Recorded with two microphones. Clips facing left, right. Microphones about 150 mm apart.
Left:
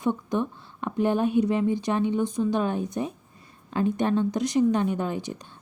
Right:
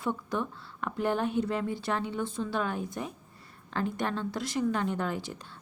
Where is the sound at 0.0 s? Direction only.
20° left (ahead or behind).